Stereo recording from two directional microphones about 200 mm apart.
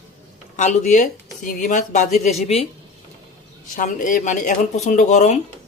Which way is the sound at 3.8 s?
40° left (ahead or behind).